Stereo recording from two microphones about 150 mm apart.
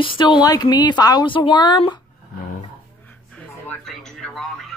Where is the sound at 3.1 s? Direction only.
10° left (ahead or behind).